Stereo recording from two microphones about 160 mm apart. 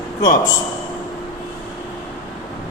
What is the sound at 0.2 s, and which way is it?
Speech, 20° left (ahead or behind).